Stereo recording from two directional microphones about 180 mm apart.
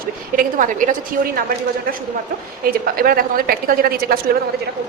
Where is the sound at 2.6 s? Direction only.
55° right (ahead or behind).